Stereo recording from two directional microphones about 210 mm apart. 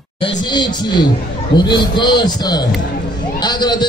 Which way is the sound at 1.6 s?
20° left (ahead or behind).